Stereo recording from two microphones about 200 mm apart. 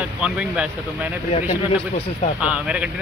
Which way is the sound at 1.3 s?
35° left (ahead or behind).